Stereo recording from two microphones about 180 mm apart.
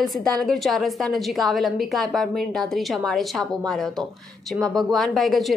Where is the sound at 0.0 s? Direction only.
5° left (ahead or behind).